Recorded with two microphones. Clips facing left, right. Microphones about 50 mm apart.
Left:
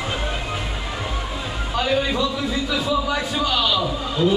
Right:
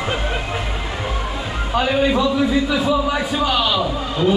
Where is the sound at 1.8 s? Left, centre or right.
Centre.